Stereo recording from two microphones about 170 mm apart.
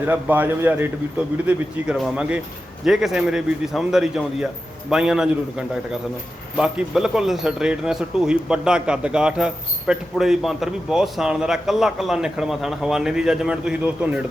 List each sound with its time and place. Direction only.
0.0 s a man's voice: 10° right (ahead or behind)